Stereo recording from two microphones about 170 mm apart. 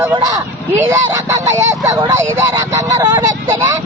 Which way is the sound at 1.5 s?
20° right (ahead or behind).